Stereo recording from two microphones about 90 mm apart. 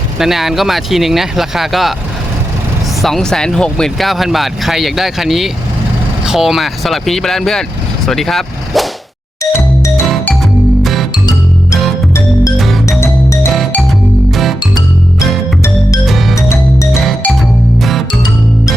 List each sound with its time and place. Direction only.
0.2 s speech: 5° right (ahead or behind)
3.0 s speech: 5° left (ahead or behind)
9.4 s music: 35° left (ahead or behind)
12.5 s music: centre (ahead or behind)
13.0 s music: 30° left (ahead or behind)
16.3 s music: 30° left (ahead or behind)